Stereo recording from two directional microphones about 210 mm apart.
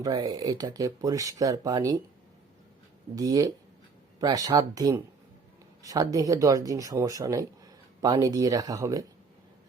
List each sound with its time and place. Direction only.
0.0 s speech: 20° right (ahead or behind)
3.2 s speech: 15° right (ahead or behind)